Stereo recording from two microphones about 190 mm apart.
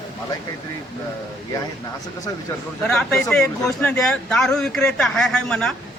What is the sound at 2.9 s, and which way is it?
Speech, 5° left (ahead or behind).